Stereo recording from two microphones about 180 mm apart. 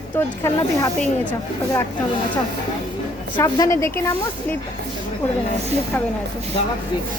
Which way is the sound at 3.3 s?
20° left (ahead or behind).